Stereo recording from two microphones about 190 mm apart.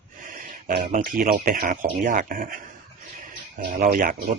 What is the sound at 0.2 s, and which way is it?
Speech, 45° right (ahead or behind).